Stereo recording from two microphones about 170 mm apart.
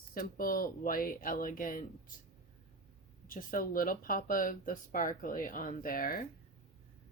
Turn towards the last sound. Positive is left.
turn(degrees=60)  # may be behind; listen again after turning